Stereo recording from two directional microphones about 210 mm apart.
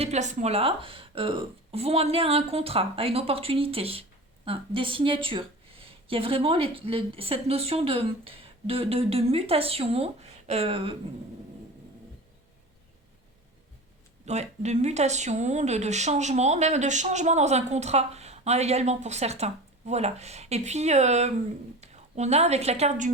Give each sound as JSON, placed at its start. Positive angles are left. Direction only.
{"t": 0.0, "sound": "speech", "side_deg": -35}
{"t": 14.3, "sound": "a woman's voice", "side_deg": -30}